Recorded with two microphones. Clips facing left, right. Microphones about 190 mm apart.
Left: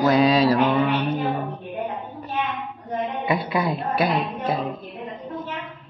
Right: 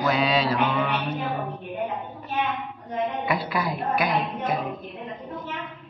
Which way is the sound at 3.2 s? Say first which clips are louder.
Left 3 dB; 25° left (ahead or behind).